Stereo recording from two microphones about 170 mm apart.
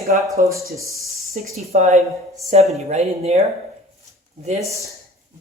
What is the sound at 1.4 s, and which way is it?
Speech, 50° right (ahead or behind).